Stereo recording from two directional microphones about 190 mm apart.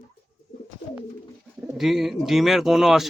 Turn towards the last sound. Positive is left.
turn(degrees=0)  # may be behind; listen again after turning